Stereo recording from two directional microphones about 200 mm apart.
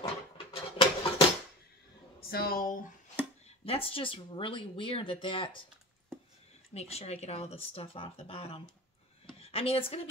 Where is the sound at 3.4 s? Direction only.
30° left (ahead or behind).